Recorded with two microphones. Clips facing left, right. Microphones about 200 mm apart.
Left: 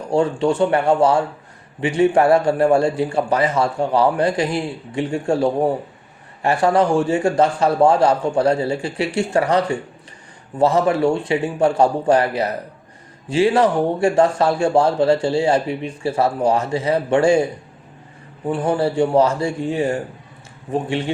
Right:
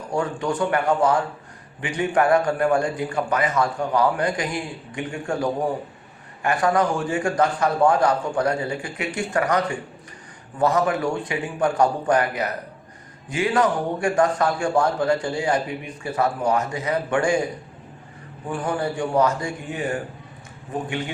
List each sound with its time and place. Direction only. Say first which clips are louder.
0.1 s a man's voice: left 7 dB; 25° left (ahead or behind)
18.4 s a man's voice: left 6 dB; 25° left (ahead or behind)